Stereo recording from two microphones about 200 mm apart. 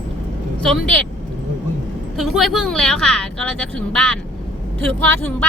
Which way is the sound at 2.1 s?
Centre (ahead or behind).